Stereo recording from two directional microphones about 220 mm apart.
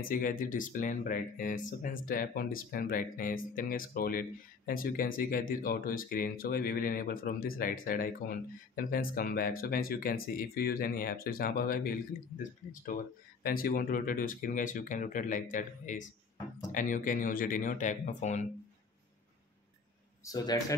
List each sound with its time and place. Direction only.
0.0 s speech: 40° left (ahead or behind)
13.4 s speech: 40° left (ahead or behind)
20.2 s speech: 15° left (ahead or behind)